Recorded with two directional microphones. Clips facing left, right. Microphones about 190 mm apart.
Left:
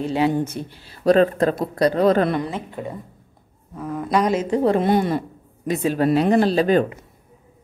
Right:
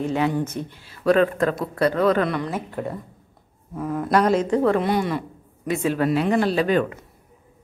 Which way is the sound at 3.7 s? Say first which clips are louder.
Right 1 dB; 10° right (ahead or behind).